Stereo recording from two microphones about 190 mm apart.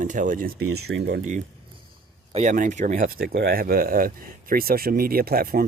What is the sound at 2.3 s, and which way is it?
Speech, 40° right (ahead or behind).